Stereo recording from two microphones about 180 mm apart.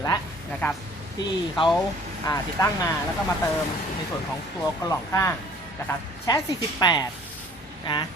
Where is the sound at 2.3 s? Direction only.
20° left (ahead or behind).